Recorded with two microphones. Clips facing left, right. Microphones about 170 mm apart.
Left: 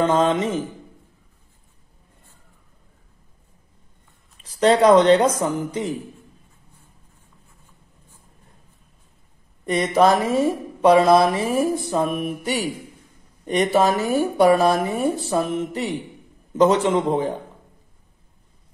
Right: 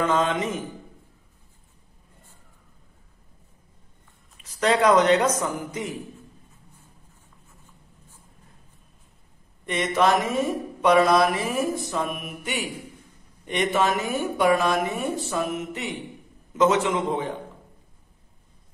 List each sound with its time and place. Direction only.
0.0 s speech: 30° left (ahead or behind)
4.4 s speech: 30° left (ahead or behind)
9.7 s speech: 35° left (ahead or behind)